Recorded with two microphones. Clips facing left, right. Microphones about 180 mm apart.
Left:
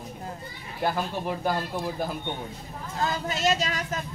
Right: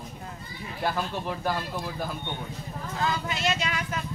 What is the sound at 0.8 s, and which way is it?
Speech, 15° left (ahead or behind).